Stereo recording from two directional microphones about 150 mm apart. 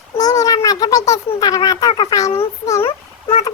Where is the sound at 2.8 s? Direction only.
40° left (ahead or behind).